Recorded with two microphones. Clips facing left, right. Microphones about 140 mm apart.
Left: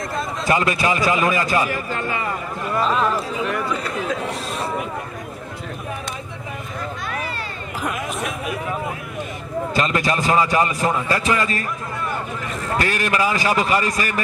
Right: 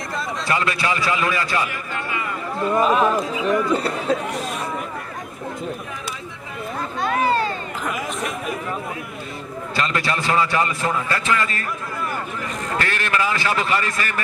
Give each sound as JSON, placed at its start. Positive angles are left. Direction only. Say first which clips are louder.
{"t": 0.5, "sound": "a man's voice", "louder": "left 4 dB", "side_deg": 20}
{"t": 1.7, "sound": "speech", "louder": "left 4 dB", "side_deg": 35}
{"t": 2.7, "sound": "speech", "louder": "right 2 dB", "side_deg": -10}
{"t": 3.4, "sound": "speech", "louder": "right 5 dB", "side_deg": -35}
{"t": 7.9, "sound": "speech", "louder": "even", "side_deg": 0}
{"t": 9.8, "sound": "a man's voice", "louder": "left 2 dB", "side_deg": 20}
{"t": 12.7, "sound": "a man's voice", "louder": "left 3 dB", "side_deg": 15}